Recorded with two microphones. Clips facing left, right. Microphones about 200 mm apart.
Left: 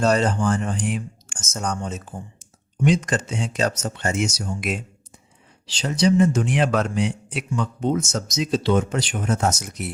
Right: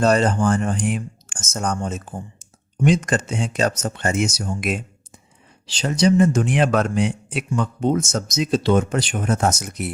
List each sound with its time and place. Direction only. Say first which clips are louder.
0.0 s a man's voice: right 2 dB; 55° right (ahead or behind)